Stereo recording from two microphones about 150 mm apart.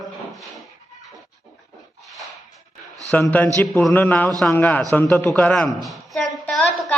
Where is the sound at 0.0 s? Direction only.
Centre (ahead or behind).